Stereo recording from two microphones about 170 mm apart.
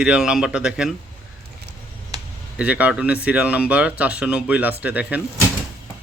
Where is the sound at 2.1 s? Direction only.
25° right (ahead or behind).